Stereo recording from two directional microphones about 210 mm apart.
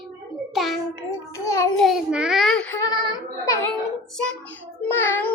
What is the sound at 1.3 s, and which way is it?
Speech, 15° left (ahead or behind).